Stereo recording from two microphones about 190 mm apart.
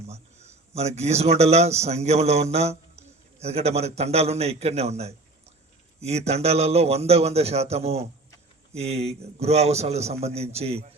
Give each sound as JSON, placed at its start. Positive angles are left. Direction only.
{"t": 0.1, "sound": "a man's voice", "side_deg": -35}